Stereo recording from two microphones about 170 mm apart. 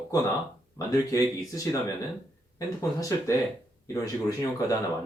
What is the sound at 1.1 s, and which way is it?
Speech, 20° left (ahead or behind).